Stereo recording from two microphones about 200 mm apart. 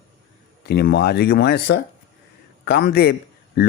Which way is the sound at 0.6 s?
55° left (ahead or behind).